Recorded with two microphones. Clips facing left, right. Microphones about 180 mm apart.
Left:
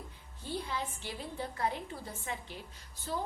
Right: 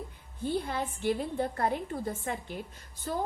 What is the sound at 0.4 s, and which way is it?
A woman's voice, 55° right (ahead or behind).